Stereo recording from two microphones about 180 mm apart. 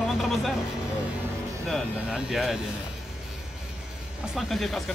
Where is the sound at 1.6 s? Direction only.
Centre (ahead or behind).